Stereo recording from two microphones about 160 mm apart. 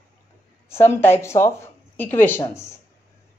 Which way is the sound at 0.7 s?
15° left (ahead or behind).